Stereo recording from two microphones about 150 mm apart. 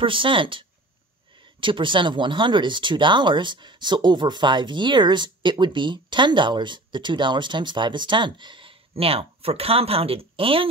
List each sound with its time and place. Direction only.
0.0 s speech: 35° right (ahead or behind)